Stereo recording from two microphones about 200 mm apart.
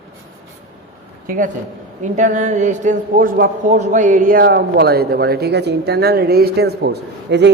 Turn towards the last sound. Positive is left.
turn(degrees=-55)  # may be behind; listen again after turning